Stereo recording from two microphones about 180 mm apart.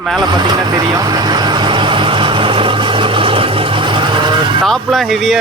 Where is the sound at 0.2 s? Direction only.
25° right (ahead or behind).